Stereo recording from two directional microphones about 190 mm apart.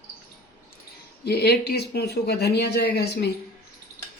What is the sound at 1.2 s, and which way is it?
Speech, 60° left (ahead or behind).